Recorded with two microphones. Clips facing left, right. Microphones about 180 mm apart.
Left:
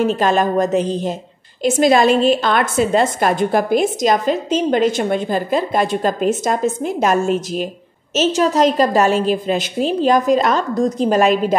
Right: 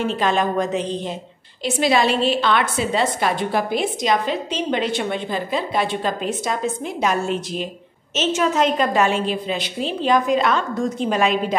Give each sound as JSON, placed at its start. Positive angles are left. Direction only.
{"t": 0.0, "sound": "a woman's voice", "side_deg": 45}